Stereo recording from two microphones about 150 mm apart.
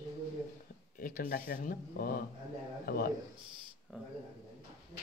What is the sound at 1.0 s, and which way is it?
Speech, 70° left (ahead or behind).